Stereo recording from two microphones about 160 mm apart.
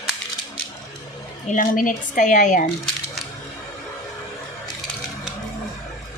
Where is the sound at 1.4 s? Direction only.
55° left (ahead or behind).